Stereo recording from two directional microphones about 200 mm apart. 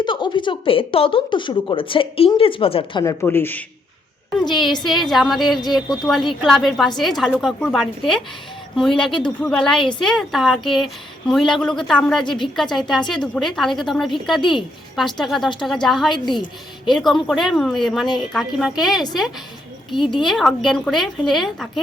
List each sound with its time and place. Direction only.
0.0 s a woman's voice: 25° left (ahead or behind)
3.0 s speech: 15° left (ahead or behind)
4.9 s speech: centre (ahead or behind)
16.2 s a woman's voice: 25° left (ahead or behind)
16.9 s speech: centre (ahead or behind)
20.1 s speech: centre (ahead or behind)